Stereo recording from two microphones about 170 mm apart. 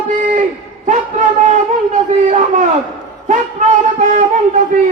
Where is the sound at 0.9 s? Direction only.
50° right (ahead or behind).